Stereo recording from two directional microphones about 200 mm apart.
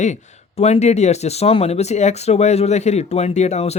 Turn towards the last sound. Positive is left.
turn(degrees=35)  # may be behind; listen again after turning